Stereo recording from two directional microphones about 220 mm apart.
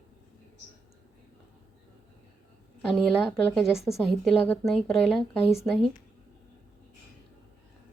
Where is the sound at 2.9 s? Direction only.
Centre (ahead or behind).